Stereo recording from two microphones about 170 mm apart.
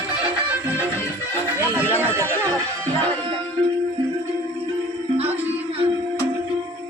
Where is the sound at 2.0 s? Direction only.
15° right (ahead or behind).